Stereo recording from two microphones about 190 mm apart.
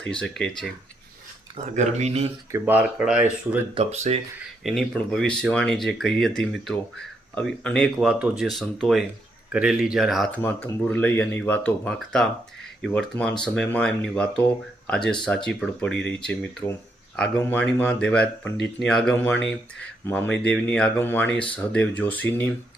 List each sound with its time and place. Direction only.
0.0 s speech: 5° left (ahead or behind)
1.5 s speech: 40° right (ahead or behind)
2.5 s speech: 10° right (ahead or behind)
3.8 s speech: 35° right (ahead or behind)
4.6 s speech: centre (ahead or behind)